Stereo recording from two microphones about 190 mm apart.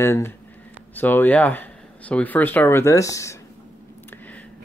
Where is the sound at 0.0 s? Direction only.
15° left (ahead or behind).